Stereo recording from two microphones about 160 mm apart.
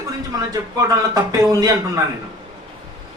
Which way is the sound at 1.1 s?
20° right (ahead or behind).